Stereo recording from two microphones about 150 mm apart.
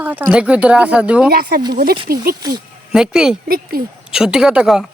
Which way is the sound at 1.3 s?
90° right.